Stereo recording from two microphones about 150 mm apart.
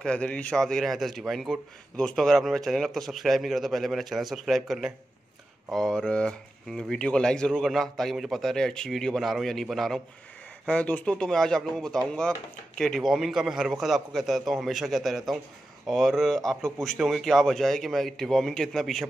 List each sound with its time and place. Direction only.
0.0 s speech: 5° left (ahead or behind)